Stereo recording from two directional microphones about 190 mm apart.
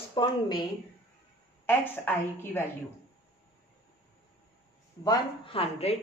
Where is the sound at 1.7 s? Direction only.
10° left (ahead or behind).